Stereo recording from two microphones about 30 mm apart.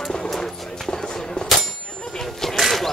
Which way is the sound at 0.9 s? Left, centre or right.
Centre.